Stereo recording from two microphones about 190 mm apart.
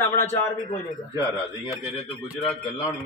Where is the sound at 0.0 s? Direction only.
10° left (ahead or behind).